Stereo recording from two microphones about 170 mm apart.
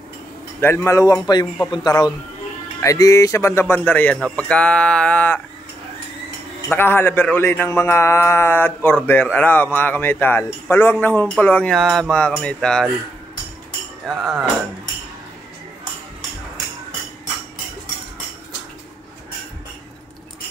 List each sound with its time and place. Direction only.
0.6 s a man's voice: 15° left (ahead or behind)
6.7 s a man's voice: 10° left (ahead or behind)
14.0 s speech: 5° left (ahead or behind)